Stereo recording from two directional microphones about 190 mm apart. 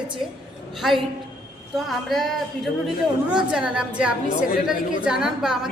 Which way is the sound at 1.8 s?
Centre (ahead or behind).